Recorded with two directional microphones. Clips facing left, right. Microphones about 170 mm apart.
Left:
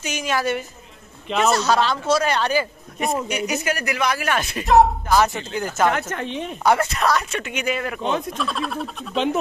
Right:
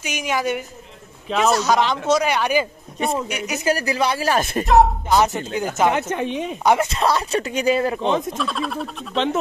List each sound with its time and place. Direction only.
0.0 s speech: 15° right (ahead or behind)
3.1 s speech: centre (ahead or behind)
3.6 s speech: 30° right (ahead or behind)
5.1 s a woman's voice: 20° right (ahead or behind)
8.4 s speech: centre (ahead or behind)